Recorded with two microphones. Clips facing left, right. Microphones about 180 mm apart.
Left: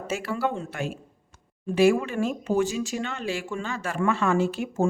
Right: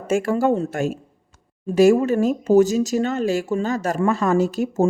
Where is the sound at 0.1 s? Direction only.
45° right (ahead or behind).